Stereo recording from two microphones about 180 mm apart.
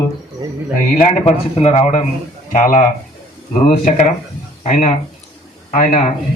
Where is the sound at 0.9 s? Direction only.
40° left (ahead or behind).